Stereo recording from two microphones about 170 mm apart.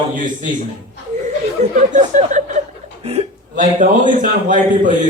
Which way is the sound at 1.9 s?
45° right (ahead or behind).